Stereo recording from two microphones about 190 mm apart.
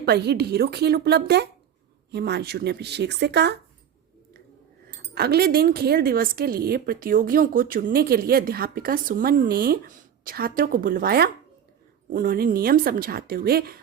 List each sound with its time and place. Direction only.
0.0 s speech: 60° right (ahead or behind)
5.1 s speech: 55° right (ahead or behind)